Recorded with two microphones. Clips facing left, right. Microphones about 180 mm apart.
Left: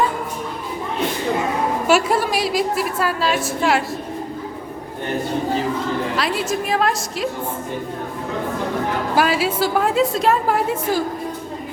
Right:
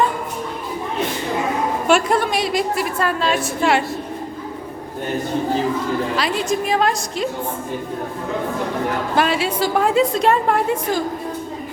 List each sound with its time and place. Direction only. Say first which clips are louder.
1.9 s a woman's voice: right 1 dB; 5° left (ahead or behind)
6.1 s a woman's voice: right 1 dB; 5° left (ahead or behind)
9.1 s a woman's voice: left 1 dB; 5° left (ahead or behind)